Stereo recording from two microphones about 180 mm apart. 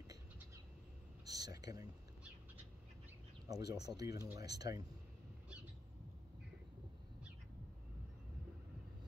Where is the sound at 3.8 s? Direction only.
20° right (ahead or behind).